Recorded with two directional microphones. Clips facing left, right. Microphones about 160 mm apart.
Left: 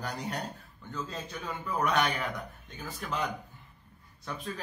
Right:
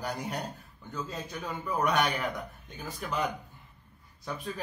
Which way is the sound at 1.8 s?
Centre (ahead or behind).